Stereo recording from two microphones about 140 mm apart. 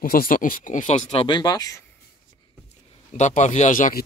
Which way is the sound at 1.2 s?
30° left (ahead or behind).